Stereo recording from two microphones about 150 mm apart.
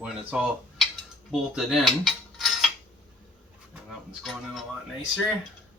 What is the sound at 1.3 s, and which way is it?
Cutlery, centre (ahead or behind).